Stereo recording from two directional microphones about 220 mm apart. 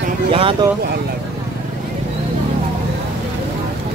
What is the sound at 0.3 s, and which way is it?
Speech, 25° right (ahead or behind).